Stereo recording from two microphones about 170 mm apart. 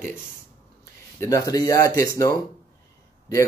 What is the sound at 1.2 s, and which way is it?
Speech, 20° left (ahead or behind).